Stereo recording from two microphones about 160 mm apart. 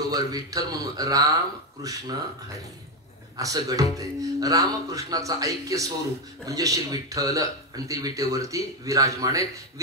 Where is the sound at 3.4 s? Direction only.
20° right (ahead or behind).